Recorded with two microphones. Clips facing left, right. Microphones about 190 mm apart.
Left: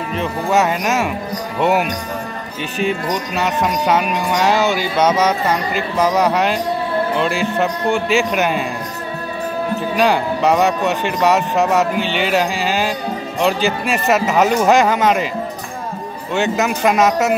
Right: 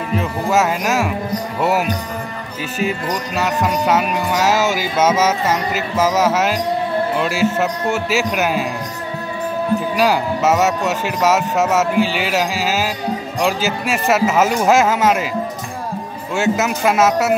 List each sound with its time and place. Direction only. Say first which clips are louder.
0.1 s speech: even; 5° right (ahead or behind)
9.9 s speech: left 4 dB; 5° right (ahead or behind)
16.3 s speech: even; 5° right (ahead or behind)